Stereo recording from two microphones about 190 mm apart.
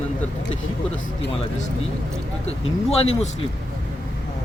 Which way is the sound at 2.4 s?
35° left (ahead or behind).